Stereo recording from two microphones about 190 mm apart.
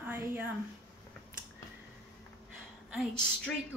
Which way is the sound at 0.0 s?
10° right (ahead or behind).